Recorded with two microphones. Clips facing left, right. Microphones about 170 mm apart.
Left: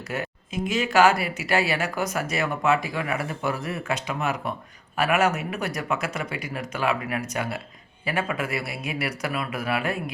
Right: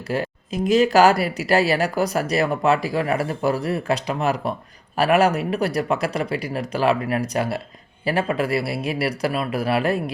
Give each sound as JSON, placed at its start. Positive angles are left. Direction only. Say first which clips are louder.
{"t": 0.1, "sound": "speech", "louder": "right 6 dB", "side_deg": -35}